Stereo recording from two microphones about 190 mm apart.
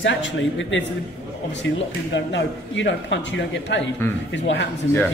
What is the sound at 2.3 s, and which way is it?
Speech, 70° left (ahead or behind).